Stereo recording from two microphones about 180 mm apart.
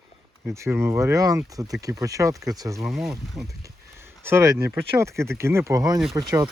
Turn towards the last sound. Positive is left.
turn(degrees=-20)  # may be behind; listen again after turning